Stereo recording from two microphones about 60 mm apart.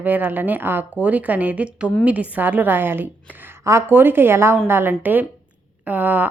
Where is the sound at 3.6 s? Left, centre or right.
Right.